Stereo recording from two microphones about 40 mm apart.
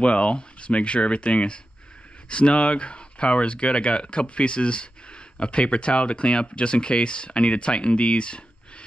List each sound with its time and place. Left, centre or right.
0.0 s speech: left